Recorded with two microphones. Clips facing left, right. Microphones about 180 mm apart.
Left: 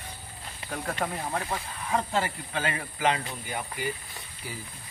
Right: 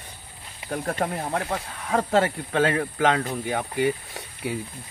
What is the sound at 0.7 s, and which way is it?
Speech, 45° right (ahead or behind).